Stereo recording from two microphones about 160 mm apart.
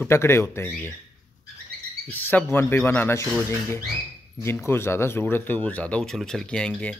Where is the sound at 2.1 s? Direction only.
10° left (ahead or behind).